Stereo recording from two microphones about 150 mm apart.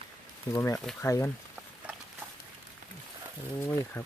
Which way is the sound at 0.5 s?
20° left (ahead or behind).